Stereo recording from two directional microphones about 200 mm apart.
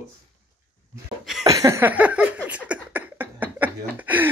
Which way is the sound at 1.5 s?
15° right (ahead or behind).